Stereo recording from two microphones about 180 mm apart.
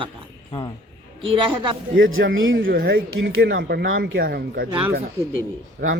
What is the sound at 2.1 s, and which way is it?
Speech, 90° right.